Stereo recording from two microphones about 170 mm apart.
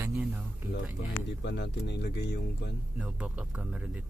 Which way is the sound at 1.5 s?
90° left.